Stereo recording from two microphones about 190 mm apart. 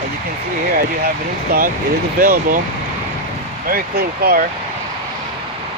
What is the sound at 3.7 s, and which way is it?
Speech, 50° right (ahead or behind).